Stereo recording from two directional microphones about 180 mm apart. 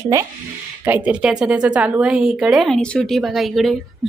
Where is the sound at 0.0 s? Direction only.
15° right (ahead or behind).